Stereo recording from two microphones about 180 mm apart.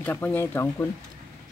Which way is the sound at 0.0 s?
10° left (ahead or behind).